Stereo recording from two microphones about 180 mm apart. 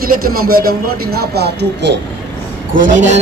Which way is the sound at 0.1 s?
55° right (ahead or behind).